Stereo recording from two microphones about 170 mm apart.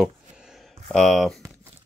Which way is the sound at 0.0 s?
Centre (ahead or behind).